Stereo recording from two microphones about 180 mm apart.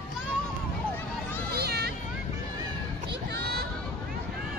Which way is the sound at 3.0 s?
65° right (ahead or behind).